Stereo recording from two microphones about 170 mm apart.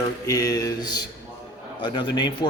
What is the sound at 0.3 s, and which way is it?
A man's voice, 20° left (ahead or behind).